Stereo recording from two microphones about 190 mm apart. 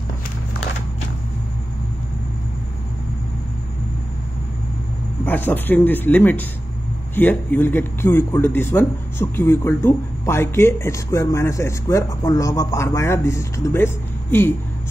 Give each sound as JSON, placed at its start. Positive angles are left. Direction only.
{"t": 5.2, "sound": "a man's voice", "side_deg": 10}